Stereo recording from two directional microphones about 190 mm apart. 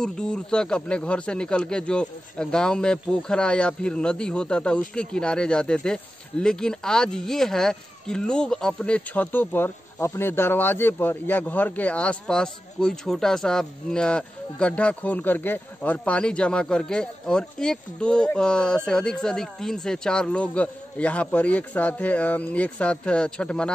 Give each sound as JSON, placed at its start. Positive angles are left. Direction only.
{"t": 0.0, "sound": "speech", "side_deg": 5}